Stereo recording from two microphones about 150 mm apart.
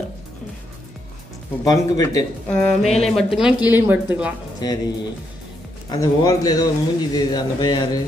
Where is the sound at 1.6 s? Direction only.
20° left (ahead or behind).